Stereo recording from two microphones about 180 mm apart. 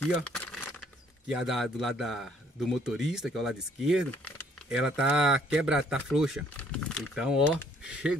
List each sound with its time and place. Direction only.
0.0 s crumpling: 5° left (ahead or behind)
1.4 s speech: centre (ahead or behind)
6.5 s a sound: 5° left (ahead or behind)
7.2 s speech: 5° right (ahead or behind)